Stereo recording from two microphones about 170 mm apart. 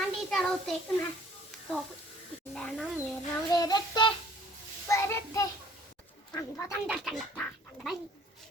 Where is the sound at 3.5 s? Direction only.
25° left (ahead or behind).